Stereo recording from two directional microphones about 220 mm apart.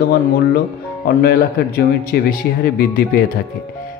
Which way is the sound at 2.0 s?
45° left (ahead or behind).